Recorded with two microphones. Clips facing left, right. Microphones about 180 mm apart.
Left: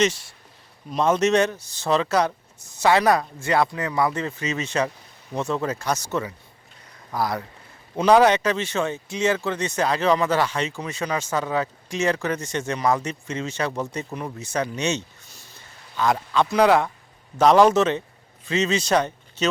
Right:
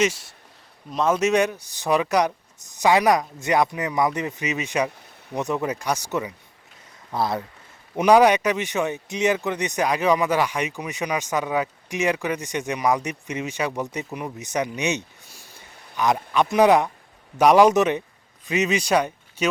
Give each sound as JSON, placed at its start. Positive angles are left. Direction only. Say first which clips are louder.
{"t": 0.9, "sound": "speech", "louder": "left 1 dB", "side_deg": 0}